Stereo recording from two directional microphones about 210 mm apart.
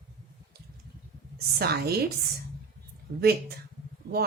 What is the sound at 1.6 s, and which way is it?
Speech, 45° right (ahead or behind).